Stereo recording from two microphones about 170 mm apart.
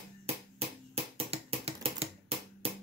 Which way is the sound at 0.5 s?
35° right (ahead or behind).